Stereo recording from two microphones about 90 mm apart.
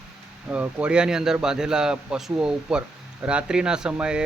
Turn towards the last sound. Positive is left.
turn(degrees=-10)  # may be behind; listen again after turning